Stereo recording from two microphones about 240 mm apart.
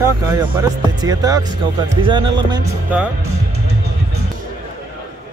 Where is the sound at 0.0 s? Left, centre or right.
Centre.